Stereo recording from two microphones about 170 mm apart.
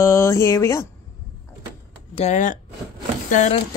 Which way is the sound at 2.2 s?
45° left (ahead or behind).